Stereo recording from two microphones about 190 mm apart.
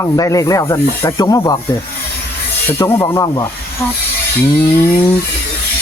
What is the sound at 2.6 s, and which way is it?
Speech, 15° left (ahead or behind).